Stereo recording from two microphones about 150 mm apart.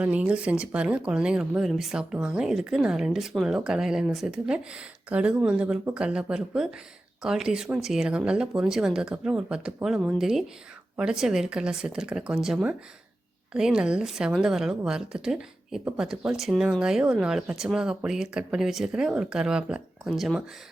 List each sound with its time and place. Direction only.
0.0 s a woman's voice: 10° right (ahead or behind)